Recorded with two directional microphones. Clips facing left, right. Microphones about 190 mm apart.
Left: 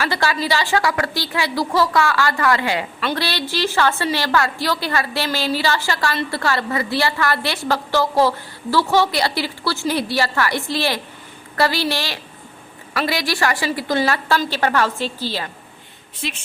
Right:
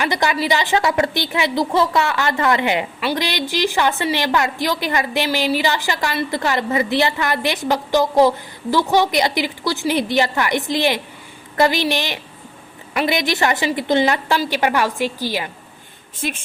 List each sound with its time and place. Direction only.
0.0 s a woman's voice: 20° right (ahead or behind)
16.2 s a woman's voice: 45° right (ahead or behind)